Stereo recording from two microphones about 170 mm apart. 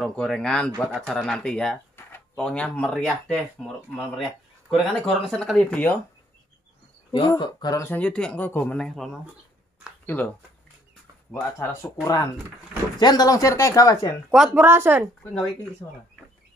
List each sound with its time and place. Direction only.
0.0 s speech: centre (ahead or behind)
7.1 s speech: 25° left (ahead or behind); by 10.3 s 10° left (ahead or behind)
11.3 s speech: 15° left (ahead or behind)
14.3 s speech: 5° right (ahead or behind)